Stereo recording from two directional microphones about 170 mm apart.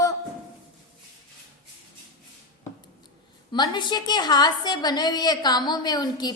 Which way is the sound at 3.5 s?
25° left (ahead or behind).